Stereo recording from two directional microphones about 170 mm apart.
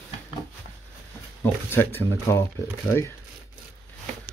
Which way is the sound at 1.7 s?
10° left (ahead or behind).